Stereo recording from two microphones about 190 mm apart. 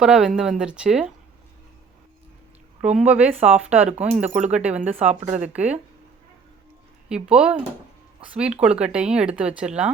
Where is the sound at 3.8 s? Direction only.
35° right (ahead or behind).